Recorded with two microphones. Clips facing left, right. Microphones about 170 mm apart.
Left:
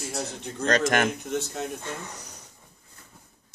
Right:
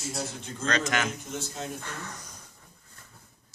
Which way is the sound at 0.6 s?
50° left (ahead or behind).